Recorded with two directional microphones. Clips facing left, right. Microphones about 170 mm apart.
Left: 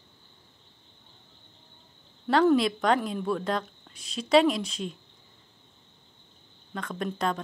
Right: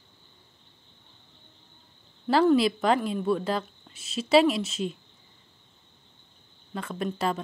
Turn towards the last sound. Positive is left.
turn(degrees=-5)  # may be behind; listen again after turning